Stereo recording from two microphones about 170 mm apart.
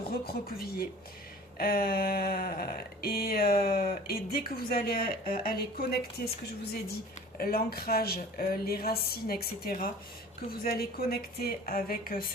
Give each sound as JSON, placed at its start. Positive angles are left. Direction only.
{"t": 0.0, "sound": "speech", "side_deg": 65}
{"t": 7.3, "sound": "speech", "side_deg": 60}